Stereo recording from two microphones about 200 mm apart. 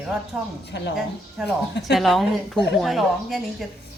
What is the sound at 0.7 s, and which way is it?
Speech, 60° left (ahead or behind).